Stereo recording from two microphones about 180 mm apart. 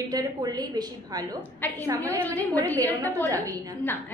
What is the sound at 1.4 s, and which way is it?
A woman's voice, 10° left (ahead or behind).